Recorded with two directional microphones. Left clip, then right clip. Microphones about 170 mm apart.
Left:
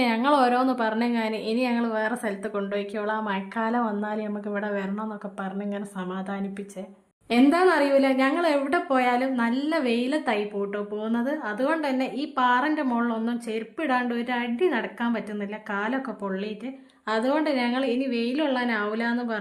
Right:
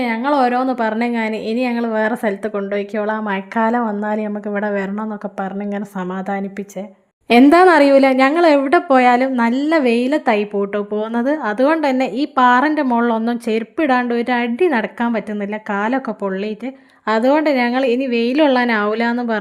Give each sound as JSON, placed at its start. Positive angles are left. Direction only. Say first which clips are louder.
{"t": 0.0, "sound": "a woman's voice", "louder": "right 5 dB", "side_deg": -25}
{"t": 7.5, "sound": "a woman's voice", "louder": "right 11 dB", "side_deg": -45}